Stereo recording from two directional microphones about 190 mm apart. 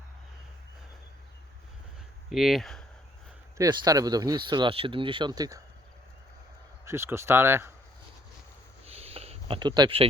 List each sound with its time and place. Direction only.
2.3 s speech: centre (ahead or behind)
3.6 s speech: 20° right (ahead or behind)
6.8 s speech: 15° right (ahead or behind)
8.9 s a sound: 30° right (ahead or behind)